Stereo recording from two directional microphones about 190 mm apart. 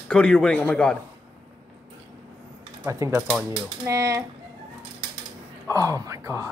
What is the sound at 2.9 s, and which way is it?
Speech, 15° right (ahead or behind).